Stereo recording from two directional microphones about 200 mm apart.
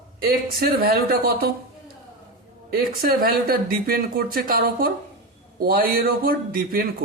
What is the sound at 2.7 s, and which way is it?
Speech, 50° right (ahead or behind).